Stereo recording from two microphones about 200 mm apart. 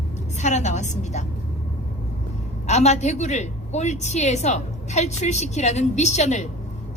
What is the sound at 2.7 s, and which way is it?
A woman's voice, 35° left (ahead or behind).